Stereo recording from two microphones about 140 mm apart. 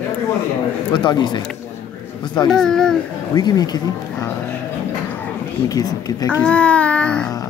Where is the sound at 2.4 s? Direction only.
5° left (ahead or behind).